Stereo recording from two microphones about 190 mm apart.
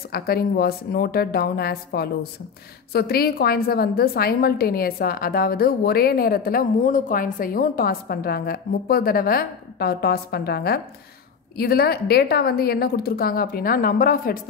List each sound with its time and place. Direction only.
0.1 s a woman's voice: 55° left (ahead or behind)